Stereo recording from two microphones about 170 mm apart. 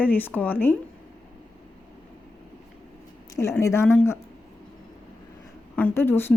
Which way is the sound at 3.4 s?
15° left (ahead or behind).